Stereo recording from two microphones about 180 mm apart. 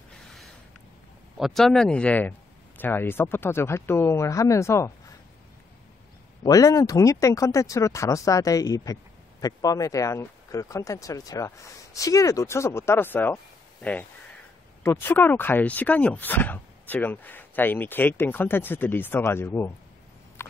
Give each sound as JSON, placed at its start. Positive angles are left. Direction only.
{"t": 1.4, "sound": "speech", "side_deg": 0}
{"t": 6.4, "sound": "speech", "side_deg": 20}
{"t": 20.4, "sound": "rodents", "side_deg": 15}